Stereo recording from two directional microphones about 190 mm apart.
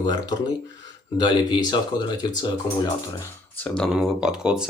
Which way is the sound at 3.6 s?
Centre (ahead or behind).